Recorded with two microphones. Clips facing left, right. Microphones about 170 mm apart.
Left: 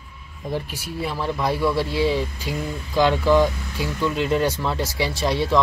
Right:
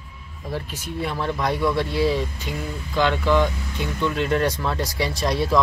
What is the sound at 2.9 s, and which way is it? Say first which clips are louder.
Speech: left 3 dB; 10° left (ahead or behind).